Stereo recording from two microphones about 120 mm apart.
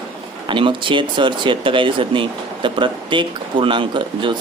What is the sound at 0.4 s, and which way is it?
A man's voice, 45° right (ahead or behind).